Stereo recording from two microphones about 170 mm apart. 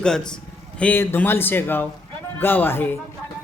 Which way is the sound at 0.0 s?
5° left (ahead or behind).